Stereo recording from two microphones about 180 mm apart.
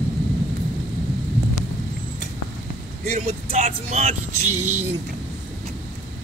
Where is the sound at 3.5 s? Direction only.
40° right (ahead or behind).